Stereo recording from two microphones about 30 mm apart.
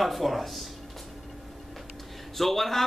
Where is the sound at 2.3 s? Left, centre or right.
Centre.